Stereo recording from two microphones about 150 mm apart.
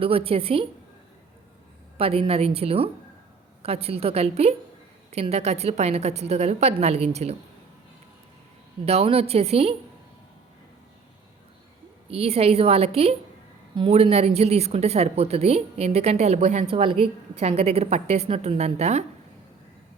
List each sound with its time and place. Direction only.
0.0 s a woman's voice: 40° right (ahead or behind)
2.0 s a woman's voice: 40° right (ahead or behind)
8.8 s a woman's voice: 45° right (ahead or behind)
12.1 s a woman's voice: 40° right (ahead or behind)
16.7 s a woman's voice: 35° right (ahead or behind)